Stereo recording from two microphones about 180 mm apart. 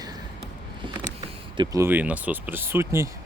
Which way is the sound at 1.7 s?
10° right (ahead or behind).